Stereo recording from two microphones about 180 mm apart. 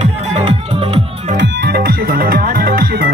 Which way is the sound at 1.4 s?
70° right (ahead or behind).